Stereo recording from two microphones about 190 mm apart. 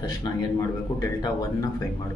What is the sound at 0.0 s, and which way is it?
Speech, 20° left (ahead or behind).